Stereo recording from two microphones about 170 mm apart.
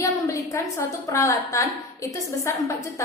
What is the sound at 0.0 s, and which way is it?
A woman's voice, 15° left (ahead or behind).